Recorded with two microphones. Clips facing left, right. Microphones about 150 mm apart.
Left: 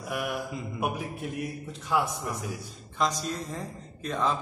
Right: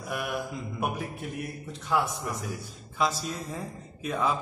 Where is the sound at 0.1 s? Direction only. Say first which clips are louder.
Even; centre (ahead or behind).